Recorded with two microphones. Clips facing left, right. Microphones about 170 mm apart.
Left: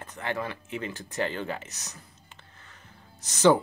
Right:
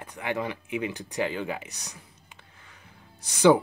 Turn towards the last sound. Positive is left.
turn(degrees=-10)  # may be behind; listen again after turning